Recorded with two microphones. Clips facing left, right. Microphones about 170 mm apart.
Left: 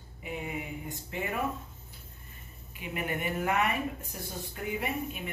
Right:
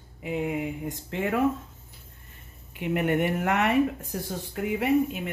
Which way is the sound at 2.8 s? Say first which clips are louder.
Right 9 dB; 65° right (ahead or behind).